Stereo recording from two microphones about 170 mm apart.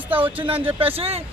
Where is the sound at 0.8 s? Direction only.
35° right (ahead or behind).